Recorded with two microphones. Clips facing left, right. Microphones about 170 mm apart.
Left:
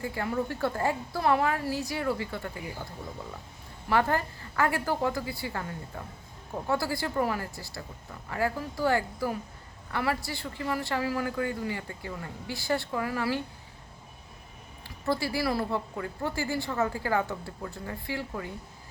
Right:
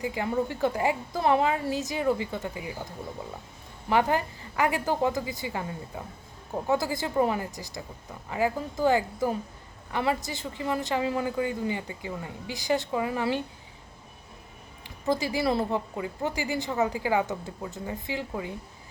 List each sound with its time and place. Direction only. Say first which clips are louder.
0.0 s speech: right 3 dB; 15° right (ahead or behind)
3.8 s speech: right 2 dB; 15° right (ahead or behind)
14.8 s speech: right 2 dB; 20° right (ahead or behind)